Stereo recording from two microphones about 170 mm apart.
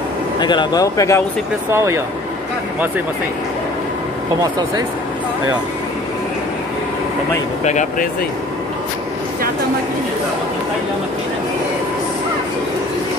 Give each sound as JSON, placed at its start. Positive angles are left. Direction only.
{"t": 0.4, "sound": "speech", "side_deg": 25}
{"t": 1.7, "sound": "speech", "side_deg": -15}
{"t": 7.6, "sound": "speech", "side_deg": 45}